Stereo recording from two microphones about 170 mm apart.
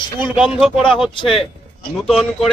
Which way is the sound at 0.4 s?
Centre (ahead or behind).